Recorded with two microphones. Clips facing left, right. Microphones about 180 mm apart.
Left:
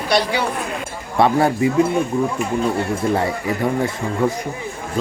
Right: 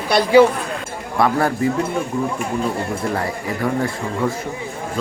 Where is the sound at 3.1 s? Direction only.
25° left (ahead or behind).